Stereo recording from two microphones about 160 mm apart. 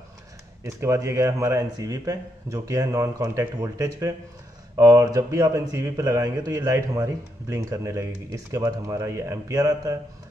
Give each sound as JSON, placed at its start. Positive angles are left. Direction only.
{"t": 0.7, "sound": "a man's voice", "side_deg": -20}